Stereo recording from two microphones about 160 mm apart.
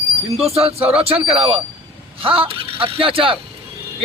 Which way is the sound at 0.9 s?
35° right (ahead or behind).